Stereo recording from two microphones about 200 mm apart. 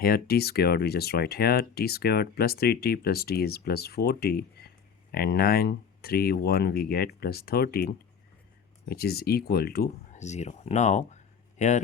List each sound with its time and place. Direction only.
0.0 s speech: 50° left (ahead or behind)
8.9 s speech: 50° left (ahead or behind)
10.1 s speech: 35° left (ahead or behind)